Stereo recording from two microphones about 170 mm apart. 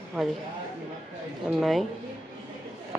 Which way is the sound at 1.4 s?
Centre (ahead or behind).